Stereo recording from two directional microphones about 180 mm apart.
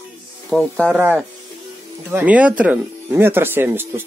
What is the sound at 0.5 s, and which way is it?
Speech, centre (ahead or behind).